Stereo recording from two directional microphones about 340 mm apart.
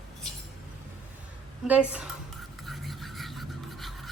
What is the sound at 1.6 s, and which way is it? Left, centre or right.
Speech, centre.